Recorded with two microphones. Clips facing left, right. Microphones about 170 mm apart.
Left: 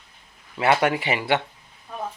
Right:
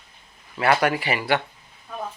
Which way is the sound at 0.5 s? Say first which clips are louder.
Even; 25° left (ahead or behind).